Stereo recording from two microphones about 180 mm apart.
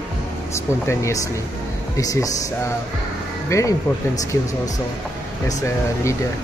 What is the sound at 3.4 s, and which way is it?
Speech, 15° left (ahead or behind).